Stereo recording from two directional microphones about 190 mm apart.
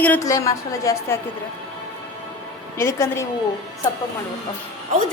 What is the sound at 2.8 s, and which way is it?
Speech, 15° left (ahead or behind).